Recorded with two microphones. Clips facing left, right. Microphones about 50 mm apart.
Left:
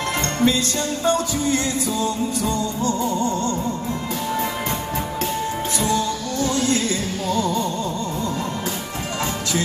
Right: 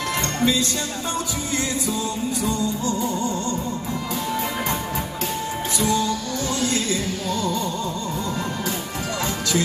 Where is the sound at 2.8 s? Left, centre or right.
Left.